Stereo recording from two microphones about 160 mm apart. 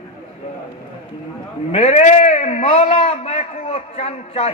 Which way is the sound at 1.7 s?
40° left (ahead or behind).